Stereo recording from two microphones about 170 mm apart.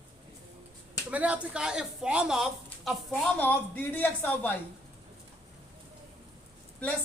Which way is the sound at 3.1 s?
10° left (ahead or behind).